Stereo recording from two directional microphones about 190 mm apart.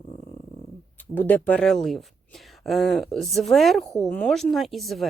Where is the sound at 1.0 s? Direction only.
10° left (ahead or behind).